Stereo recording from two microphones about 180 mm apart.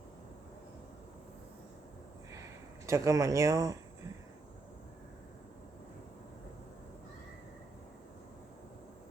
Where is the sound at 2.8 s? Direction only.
15° right (ahead or behind).